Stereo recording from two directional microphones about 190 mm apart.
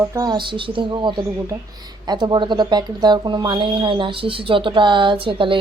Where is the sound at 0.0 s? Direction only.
15° right (ahead or behind).